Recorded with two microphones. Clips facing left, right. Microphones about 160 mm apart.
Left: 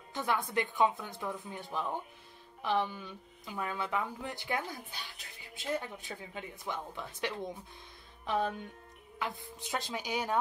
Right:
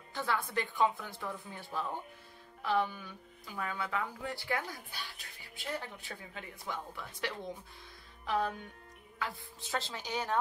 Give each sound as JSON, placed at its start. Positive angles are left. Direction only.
{"t": 0.1, "sound": "a woman's voice", "side_deg": 20}